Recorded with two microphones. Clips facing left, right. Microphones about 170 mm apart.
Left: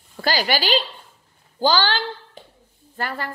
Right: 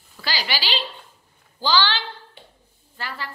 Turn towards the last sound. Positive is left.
turn(degrees=50)  # may be behind; listen again after turning